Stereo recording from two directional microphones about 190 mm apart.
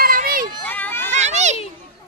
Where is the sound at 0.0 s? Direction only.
50° right (ahead or behind).